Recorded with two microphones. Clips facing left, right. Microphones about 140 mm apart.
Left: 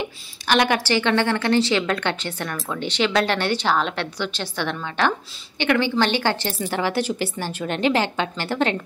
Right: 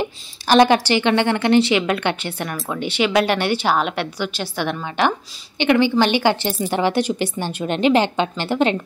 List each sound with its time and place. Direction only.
0.0 s a woman's voice: 35° right (ahead or behind)
0.8 s a woman's voice: 15° right (ahead or behind)